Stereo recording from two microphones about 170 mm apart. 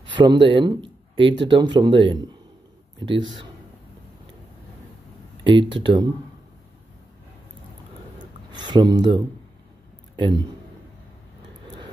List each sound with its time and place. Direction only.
0.1 s speech: 30° right (ahead or behind)
5.4 s speech: 30° right (ahead or behind)
8.5 s speech: 25° right (ahead or behind)
11.6 s vehicle: 30° right (ahead or behind)